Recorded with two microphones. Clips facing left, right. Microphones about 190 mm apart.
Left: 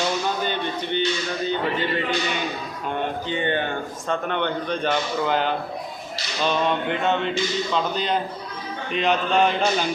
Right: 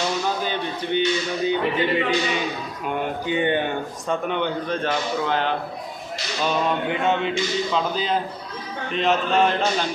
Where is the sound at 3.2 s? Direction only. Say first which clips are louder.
Right 6 dB; 15° right (ahead or behind); by 5.5 s centre (ahead or behind).